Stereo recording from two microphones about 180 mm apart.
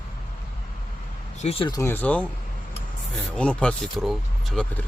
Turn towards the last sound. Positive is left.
turn(degrees=0)  # may be behind; listen again after turning